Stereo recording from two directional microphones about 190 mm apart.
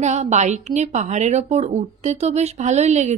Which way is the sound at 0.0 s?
35° right (ahead or behind).